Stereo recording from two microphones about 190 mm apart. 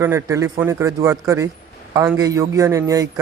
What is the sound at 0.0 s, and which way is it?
A man's voice, 15° right (ahead or behind).